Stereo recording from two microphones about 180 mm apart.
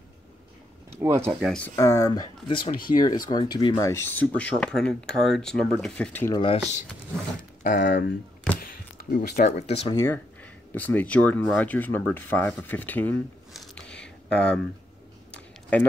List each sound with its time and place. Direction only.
1.4 s speech: 5° left (ahead or behind)
1.8 s speech: 15° left (ahead or behind)
2.6 s speech: 50° left (ahead or behind)
3.0 s speech: 20° left (ahead or behind)
6.3 s speech: 30° left (ahead or behind)
7.6 s speech: 70° left (ahead or behind)
9.1 s speech: 55° left (ahead or behind)
9.6 s speech: 35° left (ahead or behind)
9.9 s speech: 10° left (ahead or behind)
13.5 s a sound: centre (ahead or behind)